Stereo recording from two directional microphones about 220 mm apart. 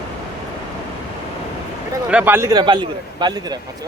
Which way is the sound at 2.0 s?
5° right (ahead or behind).